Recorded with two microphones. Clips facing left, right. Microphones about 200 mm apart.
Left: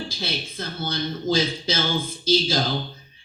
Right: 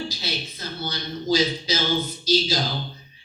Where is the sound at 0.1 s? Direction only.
50° left (ahead or behind).